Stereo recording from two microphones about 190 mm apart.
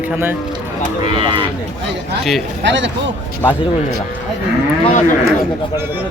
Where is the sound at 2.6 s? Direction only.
70° right (ahead or behind).